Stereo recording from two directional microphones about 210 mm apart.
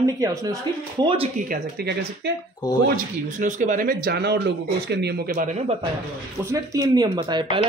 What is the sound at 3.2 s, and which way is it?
Speech, 35° right (ahead or behind).